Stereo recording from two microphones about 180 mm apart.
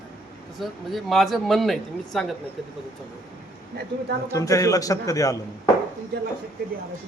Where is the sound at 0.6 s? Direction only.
Centre (ahead or behind).